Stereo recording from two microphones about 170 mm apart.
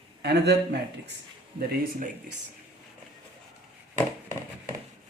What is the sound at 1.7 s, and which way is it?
Speech, 65° right (ahead or behind).